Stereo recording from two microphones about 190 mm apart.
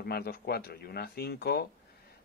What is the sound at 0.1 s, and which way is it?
Speech, 55° left (ahead or behind).